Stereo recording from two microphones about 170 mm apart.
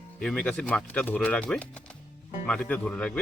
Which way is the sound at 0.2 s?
5° left (ahead or behind).